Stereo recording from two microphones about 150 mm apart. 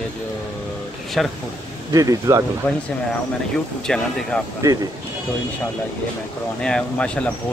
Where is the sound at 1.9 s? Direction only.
20° right (ahead or behind).